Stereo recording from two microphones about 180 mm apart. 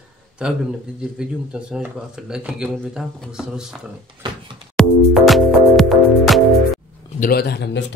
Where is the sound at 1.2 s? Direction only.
5° right (ahead or behind).